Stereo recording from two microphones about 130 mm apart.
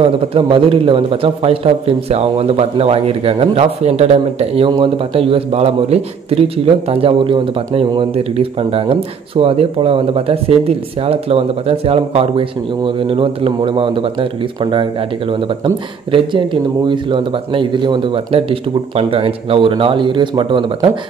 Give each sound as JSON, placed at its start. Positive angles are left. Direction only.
{"t": 0.0, "sound": "a man's voice", "side_deg": -45}
{"t": 4.6, "sound": "a man's voice", "side_deg": -40}